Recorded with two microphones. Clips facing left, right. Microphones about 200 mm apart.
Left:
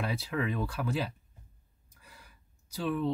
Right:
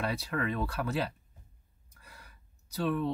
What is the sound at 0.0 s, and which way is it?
Speech, 55° right (ahead or behind).